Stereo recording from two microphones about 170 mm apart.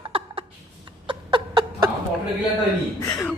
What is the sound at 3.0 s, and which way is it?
Music, 20° left (ahead or behind).